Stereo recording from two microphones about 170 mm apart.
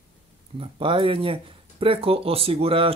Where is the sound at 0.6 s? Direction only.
30° right (ahead or behind).